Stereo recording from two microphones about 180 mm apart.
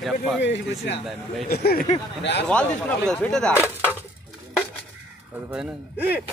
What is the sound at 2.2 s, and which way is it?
Speech, 75° left (ahead or behind).